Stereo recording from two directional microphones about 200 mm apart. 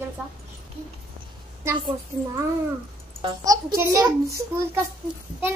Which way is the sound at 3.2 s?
20° right (ahead or behind).